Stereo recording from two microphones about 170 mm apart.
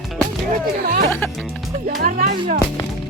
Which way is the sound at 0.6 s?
60° right (ahead or behind).